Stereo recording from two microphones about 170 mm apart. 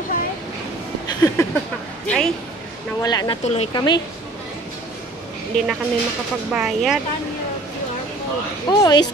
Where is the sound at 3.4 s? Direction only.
40° left (ahead or behind).